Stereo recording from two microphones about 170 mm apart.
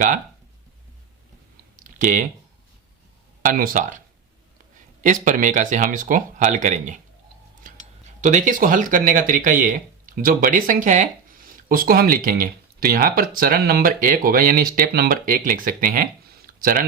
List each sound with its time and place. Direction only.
1.7 s clicking: 50° right (ahead or behind)
3.4 s speech: 50° right (ahead or behind)
5.0 s speech: 50° right (ahead or behind)
7.6 s a sound: 50° right (ahead or behind)
8.2 s speech: 45° right (ahead or behind)
16.5 s a sound: 55° right (ahead or behind)